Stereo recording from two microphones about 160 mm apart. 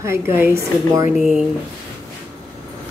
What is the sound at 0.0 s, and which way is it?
A woman's voice, 15° right (ahead or behind).